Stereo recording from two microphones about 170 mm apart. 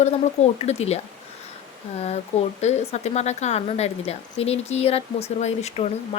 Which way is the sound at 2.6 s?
40° left (ahead or behind).